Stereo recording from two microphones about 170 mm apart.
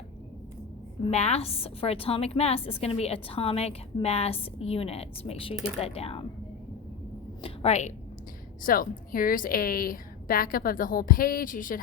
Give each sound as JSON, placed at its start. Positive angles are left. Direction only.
{"t": 1.1, "sound": "a woman's voice", "side_deg": 40}
{"t": 7.4, "sound": "a woman's voice", "side_deg": 40}
{"t": 8.6, "sound": "a woman's voice", "side_deg": 55}